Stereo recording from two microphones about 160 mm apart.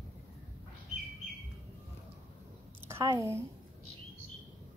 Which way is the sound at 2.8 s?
15° right (ahead or behind).